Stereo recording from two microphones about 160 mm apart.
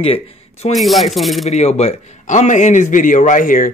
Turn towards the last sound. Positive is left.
turn(degrees=55)  # may be behind; listen again after turning